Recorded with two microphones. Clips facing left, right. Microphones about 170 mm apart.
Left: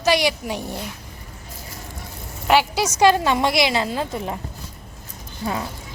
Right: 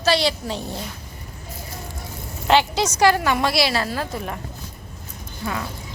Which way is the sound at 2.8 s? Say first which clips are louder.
Left 1 dB; 20° left (ahead or behind).